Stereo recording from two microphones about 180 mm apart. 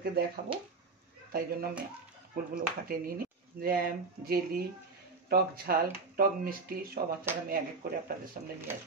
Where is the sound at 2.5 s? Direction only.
55° right (ahead or behind).